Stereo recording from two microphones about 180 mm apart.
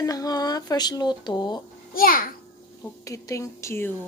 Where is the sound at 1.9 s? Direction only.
50° left (ahead or behind).